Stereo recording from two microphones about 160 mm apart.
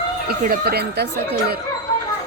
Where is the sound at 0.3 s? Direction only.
70° right (ahead or behind); by 1.5 s 90° right.